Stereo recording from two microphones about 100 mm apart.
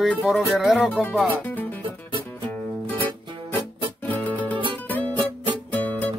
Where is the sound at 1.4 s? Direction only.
15° left (ahead or behind).